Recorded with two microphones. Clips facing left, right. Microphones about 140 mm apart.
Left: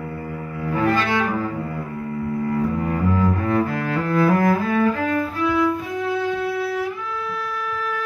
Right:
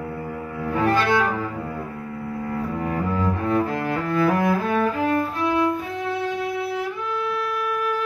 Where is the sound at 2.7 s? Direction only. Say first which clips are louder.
Left 3 dB; 25° right (ahead or behind).